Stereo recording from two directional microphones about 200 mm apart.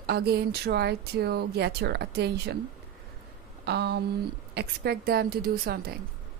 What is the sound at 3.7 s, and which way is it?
Speech, 55° right (ahead or behind).